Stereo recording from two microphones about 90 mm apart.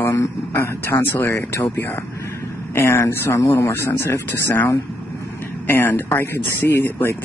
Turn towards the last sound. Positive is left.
turn(degrees=25)  # may be behind; listen again after turning